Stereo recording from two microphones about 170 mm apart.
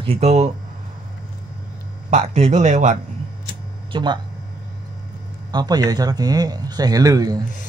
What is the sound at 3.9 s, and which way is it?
Speech, 25° right (ahead or behind).